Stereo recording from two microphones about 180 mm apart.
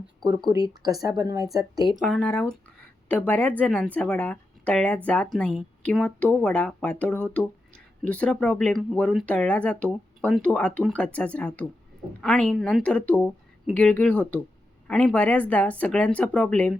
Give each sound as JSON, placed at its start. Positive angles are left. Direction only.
{"t": 0.3, "sound": "speech", "side_deg": -20}
{"t": 2.0, "sound": "speech", "side_deg": 5}